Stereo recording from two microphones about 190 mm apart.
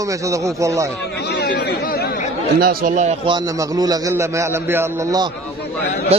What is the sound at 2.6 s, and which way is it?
Speech, 45° right (ahead or behind).